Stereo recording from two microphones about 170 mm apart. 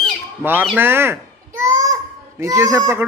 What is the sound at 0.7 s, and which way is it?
Children playing, 15° right (ahead or behind).